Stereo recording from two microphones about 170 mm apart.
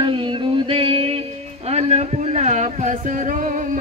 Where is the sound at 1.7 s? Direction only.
40° right (ahead or behind).